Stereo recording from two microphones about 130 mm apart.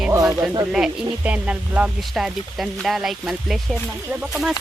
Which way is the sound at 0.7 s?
5° right (ahead or behind).